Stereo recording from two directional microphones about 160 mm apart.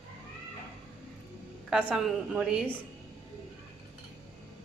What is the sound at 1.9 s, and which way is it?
Speech, centre (ahead or behind).